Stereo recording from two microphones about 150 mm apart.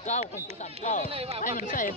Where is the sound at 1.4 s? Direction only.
60° left (ahead or behind).